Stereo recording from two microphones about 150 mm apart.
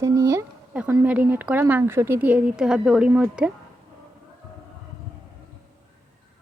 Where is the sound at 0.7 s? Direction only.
10° right (ahead or behind).